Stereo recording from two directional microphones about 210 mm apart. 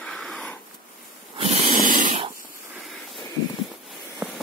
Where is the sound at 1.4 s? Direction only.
35° right (ahead or behind).